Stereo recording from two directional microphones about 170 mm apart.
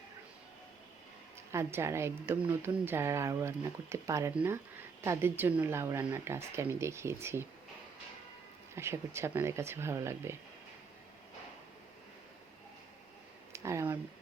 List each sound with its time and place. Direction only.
1.5 s speech: 15° right (ahead or behind)
8.7 s speech: 15° right (ahead or behind)
13.5 s speech: 15° right (ahead or behind)